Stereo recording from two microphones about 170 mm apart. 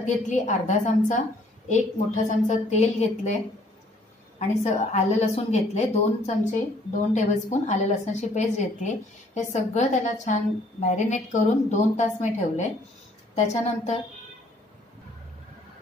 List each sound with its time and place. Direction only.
0.0 s a woman's voice: 45° left (ahead or behind)
4.4 s a woman's voice: 40° left (ahead or behind)